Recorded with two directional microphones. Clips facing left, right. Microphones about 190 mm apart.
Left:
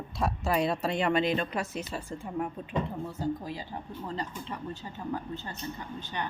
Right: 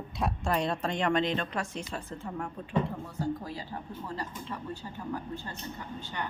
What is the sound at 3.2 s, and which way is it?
Speech, 20° left (ahead or behind).